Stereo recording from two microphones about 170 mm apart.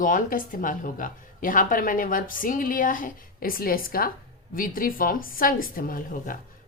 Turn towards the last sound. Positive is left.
turn(degrees=55)  # may be behind; listen again after turning